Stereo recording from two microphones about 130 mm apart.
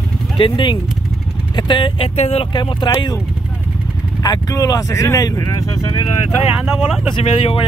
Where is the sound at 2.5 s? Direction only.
35° left (ahead or behind).